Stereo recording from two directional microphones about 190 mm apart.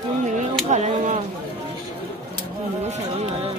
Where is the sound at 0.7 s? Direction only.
40° right (ahead or behind).